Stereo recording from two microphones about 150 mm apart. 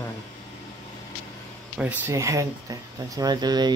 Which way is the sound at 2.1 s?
20° right (ahead or behind).